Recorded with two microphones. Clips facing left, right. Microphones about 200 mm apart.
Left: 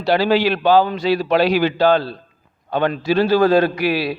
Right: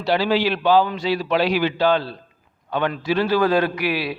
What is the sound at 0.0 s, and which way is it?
A man's voice, 40° left (ahead or behind).